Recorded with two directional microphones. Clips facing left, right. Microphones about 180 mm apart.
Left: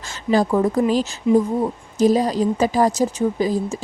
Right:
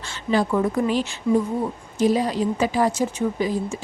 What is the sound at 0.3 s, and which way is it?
Speech, 40° left (ahead or behind).